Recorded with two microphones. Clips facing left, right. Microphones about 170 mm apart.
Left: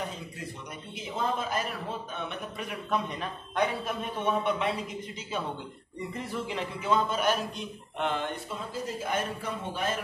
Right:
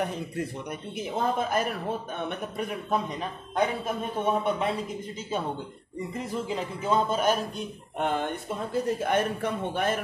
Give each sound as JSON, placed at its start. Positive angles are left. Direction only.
{"t": 0.0, "sound": "a man's voice", "side_deg": -60}
{"t": 3.2, "sound": "a man's voice", "side_deg": -25}
{"t": 4.3, "sound": "a man's voice", "side_deg": -40}
{"t": 6.1, "sound": "a man's voice", "side_deg": -40}